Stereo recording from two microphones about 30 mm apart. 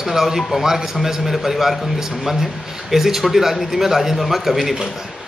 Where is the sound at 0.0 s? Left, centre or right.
Centre.